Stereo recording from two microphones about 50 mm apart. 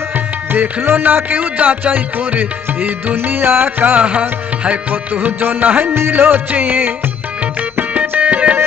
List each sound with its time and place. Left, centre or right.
0.5 s music: right
4.0 s music: right
5.9 s music: right